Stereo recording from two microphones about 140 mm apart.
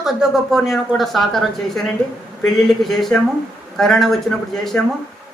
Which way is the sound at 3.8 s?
Centre (ahead or behind).